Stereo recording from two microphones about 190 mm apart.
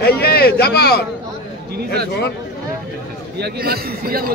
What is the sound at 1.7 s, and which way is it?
Speech, 55° right (ahead or behind).